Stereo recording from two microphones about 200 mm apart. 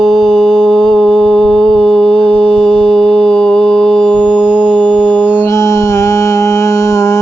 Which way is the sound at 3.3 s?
5° left (ahead or behind).